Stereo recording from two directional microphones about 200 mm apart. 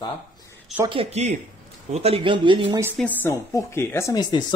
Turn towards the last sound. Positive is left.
turn(degrees=15)  # may be behind; listen again after turning